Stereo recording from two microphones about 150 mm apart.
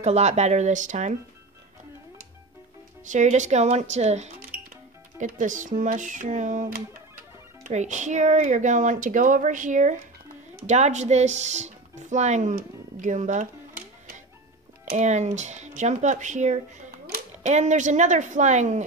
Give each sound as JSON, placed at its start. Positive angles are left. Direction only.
{"t": 0.0, "sound": "speech", "side_deg": -50}
{"t": 3.1, "sound": "speech", "side_deg": -55}
{"t": 12.5, "sound": "music", "side_deg": -55}
{"t": 14.9, "sound": "speech", "side_deg": -50}